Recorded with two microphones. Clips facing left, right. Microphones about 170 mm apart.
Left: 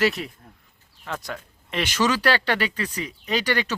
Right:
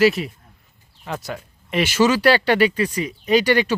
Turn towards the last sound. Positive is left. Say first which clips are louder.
# right 8 dB
turn(degrees=-10)  # may be behind; listen again after turning